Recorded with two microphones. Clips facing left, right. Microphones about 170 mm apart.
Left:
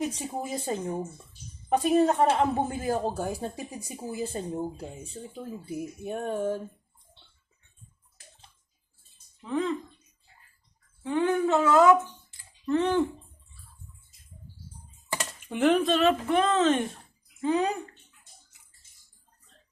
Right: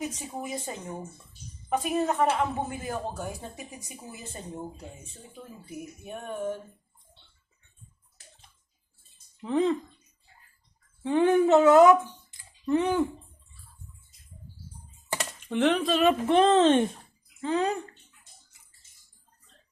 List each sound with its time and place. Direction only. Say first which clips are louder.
0.2 s speech: left 2 dB; 30° left (ahead or behind)
1.7 s speech: left 5 dB; 35° left (ahead or behind)
5.6 s speech: left 5 dB; 35° left (ahead or behind)
9.4 s a woman's voice: right 4 dB; 25° right (ahead or behind)
11.0 s speech: right 4 dB; 20° right (ahead or behind)
15.4 s speech: left 1 dB; 5° left (ahead or behind)
16.2 s a woman's voice: right 4 dB; 30° right (ahead or behind)
17.4 s speech: left 1 dB; 15° left (ahead or behind)